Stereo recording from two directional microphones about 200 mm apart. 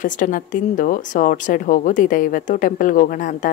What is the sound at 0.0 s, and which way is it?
A woman's voice, 40° left (ahead or behind).